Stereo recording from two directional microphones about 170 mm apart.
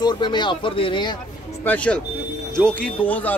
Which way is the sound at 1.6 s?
10° left (ahead or behind).